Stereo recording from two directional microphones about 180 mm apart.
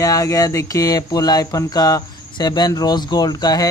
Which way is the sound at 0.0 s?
20° left (ahead or behind).